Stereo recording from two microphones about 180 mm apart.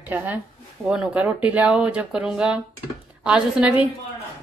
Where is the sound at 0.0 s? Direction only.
10° right (ahead or behind).